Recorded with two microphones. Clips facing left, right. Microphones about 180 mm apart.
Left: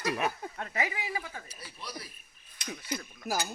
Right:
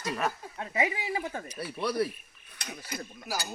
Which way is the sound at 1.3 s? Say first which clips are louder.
Right 10 dB; 55° right (ahead or behind).